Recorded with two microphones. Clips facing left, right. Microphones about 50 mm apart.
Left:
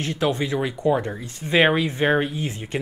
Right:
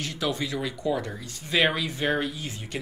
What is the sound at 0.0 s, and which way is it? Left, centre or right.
Speech, left.